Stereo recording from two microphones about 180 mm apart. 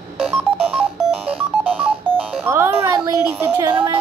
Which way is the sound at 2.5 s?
15° right (ahead or behind).